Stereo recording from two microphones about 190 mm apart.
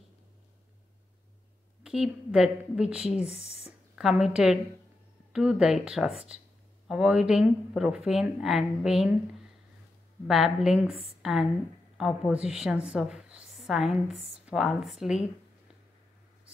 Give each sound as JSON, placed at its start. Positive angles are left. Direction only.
{"t": 1.8, "sound": "a woman's voice", "side_deg": -5}
{"t": 10.2, "sound": "speech", "side_deg": 0}